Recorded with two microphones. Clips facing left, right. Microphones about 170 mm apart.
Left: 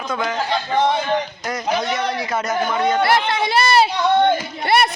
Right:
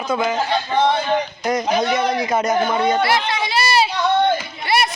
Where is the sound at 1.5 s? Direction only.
20° right (ahead or behind).